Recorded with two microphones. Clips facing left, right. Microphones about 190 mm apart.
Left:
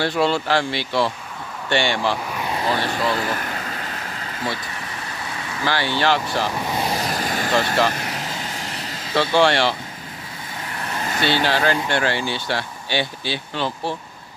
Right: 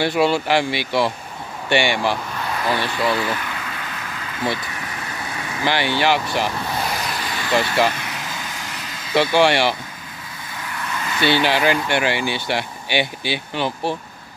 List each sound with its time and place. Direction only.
0.0 s speech: 10° right (ahead or behind)
2.8 s vehicle: 45° left (ahead or behind)
5.6 s speech: 15° right (ahead or behind)
6.8 s vehicle: 30° left (ahead or behind)
7.1 s vehicle: 45° left (ahead or behind)
9.1 s speech: 10° right (ahead or behind)
10.6 s vehicle: 35° left (ahead or behind)
11.4 s speech: 15° right (ahead or behind)